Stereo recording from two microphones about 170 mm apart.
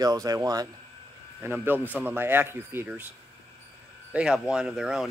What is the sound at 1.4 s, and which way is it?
A man's voice, 10° right (ahead or behind).